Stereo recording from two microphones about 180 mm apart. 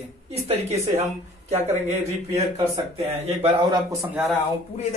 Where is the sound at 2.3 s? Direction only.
20° right (ahead or behind).